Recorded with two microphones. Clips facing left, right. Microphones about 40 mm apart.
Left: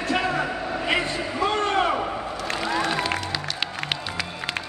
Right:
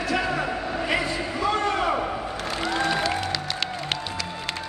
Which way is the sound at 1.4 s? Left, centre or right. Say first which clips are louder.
Left 2 dB; left.